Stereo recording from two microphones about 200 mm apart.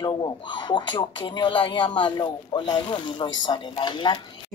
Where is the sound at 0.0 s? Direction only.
20° left (ahead or behind).